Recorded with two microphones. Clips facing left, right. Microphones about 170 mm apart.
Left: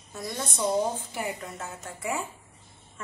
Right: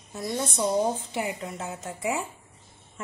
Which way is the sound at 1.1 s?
20° right (ahead or behind).